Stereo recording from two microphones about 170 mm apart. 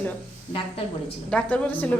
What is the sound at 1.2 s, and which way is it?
Speech, 5° left (ahead or behind).